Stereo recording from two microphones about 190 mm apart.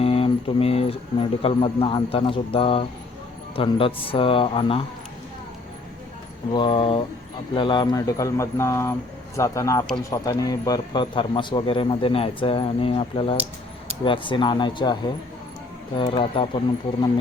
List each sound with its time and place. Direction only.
0.0 s speech: 30° left (ahead or behind)
6.5 s speech: 25° left (ahead or behind)
16.0 s speech: 30° left (ahead or behind)